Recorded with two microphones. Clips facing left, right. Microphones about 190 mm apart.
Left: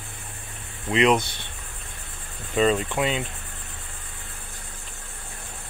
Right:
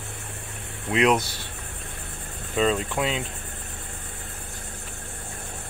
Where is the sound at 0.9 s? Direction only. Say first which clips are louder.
Left 1 dB; 5° right (ahead or behind).